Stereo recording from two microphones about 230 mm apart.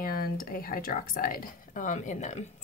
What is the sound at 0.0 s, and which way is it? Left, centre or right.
Speech, left.